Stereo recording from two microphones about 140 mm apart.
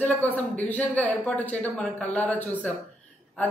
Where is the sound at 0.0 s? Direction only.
10° left (ahead or behind).